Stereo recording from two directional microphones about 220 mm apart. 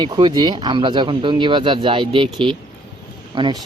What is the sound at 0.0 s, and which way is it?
Speech, 20° right (ahead or behind).